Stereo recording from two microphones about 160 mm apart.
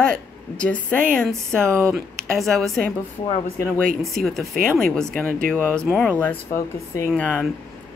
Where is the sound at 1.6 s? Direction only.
15° right (ahead or behind).